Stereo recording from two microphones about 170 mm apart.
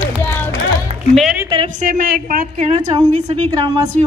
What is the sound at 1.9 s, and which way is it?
Speech, 50° right (ahead or behind).